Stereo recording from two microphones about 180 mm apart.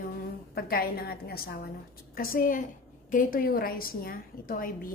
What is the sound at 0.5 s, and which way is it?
A woman's voice, 60° left (ahead or behind).